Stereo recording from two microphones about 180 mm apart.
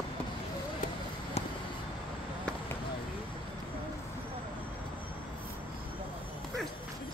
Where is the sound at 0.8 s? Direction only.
45° left (ahead or behind).